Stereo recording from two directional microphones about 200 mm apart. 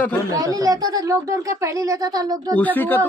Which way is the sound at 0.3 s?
15° right (ahead or behind).